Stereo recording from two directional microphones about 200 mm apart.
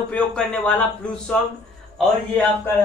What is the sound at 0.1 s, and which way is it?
A man's voice, 5° left (ahead or behind).